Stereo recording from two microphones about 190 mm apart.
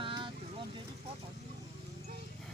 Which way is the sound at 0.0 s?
25° right (ahead or behind).